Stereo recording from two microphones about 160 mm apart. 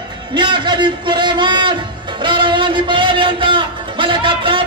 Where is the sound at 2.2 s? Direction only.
30° right (ahead or behind).